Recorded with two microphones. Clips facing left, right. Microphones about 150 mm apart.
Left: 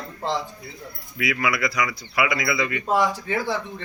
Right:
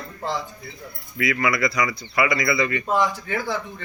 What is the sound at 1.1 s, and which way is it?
Speech, 5° left (ahead or behind).